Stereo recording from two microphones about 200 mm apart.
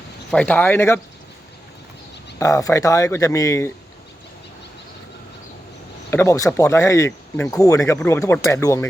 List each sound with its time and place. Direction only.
0.3 s speech: 5° left (ahead or behind)
2.4 s speech: 15° left (ahead or behind)
6.1 s speech: 15° left (ahead or behind)